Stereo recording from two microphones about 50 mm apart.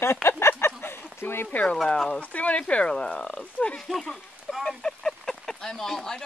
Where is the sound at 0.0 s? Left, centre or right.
Left.